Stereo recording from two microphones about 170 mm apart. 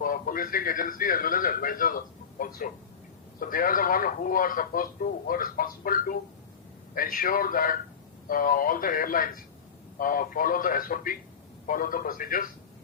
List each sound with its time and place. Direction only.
0.0 s speech: 55° left (ahead or behind)